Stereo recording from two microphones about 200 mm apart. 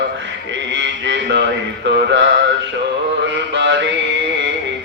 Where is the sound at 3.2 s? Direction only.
65° right (ahead or behind).